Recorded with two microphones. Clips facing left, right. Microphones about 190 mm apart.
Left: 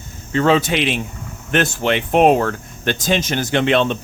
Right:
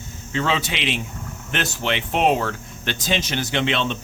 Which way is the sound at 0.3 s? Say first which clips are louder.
Left 8 dB; 45° left (ahead or behind).